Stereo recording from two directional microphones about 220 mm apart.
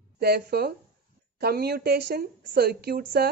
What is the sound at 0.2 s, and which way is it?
Speech, 45° right (ahead or behind).